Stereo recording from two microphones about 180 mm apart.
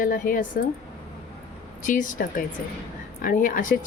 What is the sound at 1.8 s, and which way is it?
A woman's voice, 45° left (ahead or behind).